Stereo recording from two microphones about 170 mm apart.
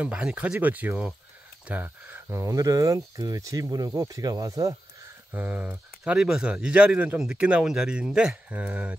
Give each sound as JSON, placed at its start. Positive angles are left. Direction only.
{"t": 0.0, "sound": "speech", "side_deg": -5}
{"t": 5.3, "sound": "speech", "side_deg": -10}